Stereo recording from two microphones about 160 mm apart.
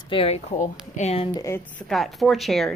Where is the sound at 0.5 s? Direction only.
50° left (ahead or behind).